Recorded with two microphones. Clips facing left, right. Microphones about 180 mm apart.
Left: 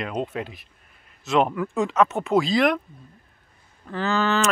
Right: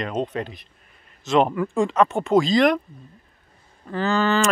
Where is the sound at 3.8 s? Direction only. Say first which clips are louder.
Right 2 dB; centre (ahead or behind).